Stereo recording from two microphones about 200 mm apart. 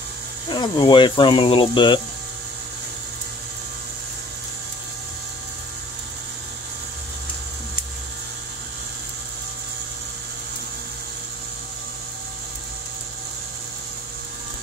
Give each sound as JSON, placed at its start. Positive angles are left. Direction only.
{"t": 0.5, "sound": "speech", "side_deg": 20}